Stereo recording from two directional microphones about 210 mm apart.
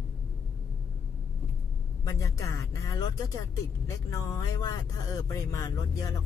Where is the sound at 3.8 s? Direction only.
15° left (ahead or behind).